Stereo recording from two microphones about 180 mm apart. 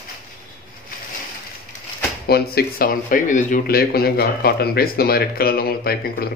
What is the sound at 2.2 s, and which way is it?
A man's voice, 60° left (ahead or behind).